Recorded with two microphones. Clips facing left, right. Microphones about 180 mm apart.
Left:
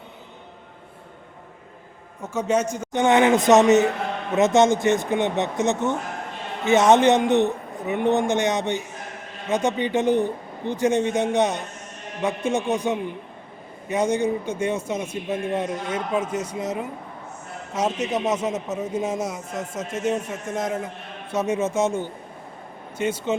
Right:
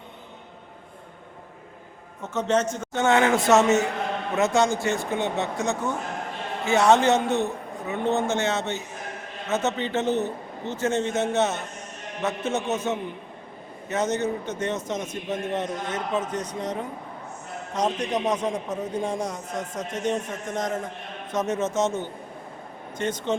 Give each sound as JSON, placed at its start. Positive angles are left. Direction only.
{"t": 2.2, "sound": "a man's voice", "side_deg": 10}